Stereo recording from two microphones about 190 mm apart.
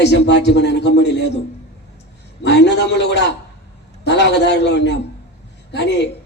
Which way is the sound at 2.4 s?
65° left (ahead or behind).